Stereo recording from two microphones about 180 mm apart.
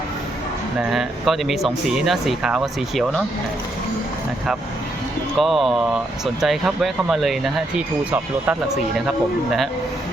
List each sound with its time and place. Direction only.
0.8 s speech: centre (ahead or behind)
5.4 s speech: centre (ahead or behind)